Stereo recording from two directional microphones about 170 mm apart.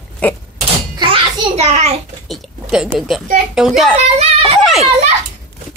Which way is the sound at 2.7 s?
5° right (ahead or behind).